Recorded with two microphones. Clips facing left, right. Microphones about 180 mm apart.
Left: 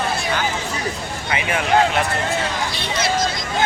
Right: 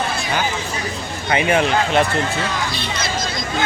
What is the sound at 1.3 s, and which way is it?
Speech, 30° right (ahead or behind).